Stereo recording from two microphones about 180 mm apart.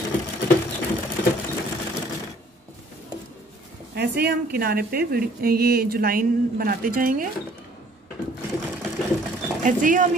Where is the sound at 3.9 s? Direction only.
65° right (ahead or behind).